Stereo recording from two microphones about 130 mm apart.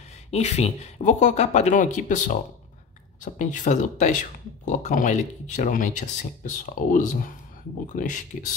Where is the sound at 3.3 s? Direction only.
75° left (ahead or behind).